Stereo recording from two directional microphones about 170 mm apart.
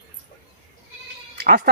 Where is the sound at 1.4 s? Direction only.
65° right (ahead or behind).